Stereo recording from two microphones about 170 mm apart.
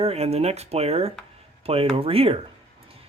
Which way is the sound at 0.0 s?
35° right (ahead or behind).